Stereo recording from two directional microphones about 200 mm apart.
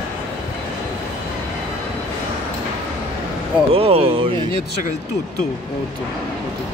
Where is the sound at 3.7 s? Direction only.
30° right (ahead or behind).